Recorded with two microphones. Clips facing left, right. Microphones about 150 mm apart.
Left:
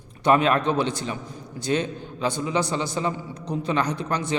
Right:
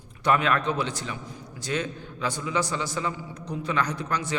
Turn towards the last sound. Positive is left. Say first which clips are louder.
# left 3 dB
turn(degrees=25)  # may be behind; listen again after turning